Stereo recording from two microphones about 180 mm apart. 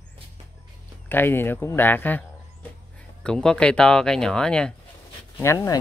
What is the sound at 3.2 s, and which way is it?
Speech, 5° left (ahead or behind).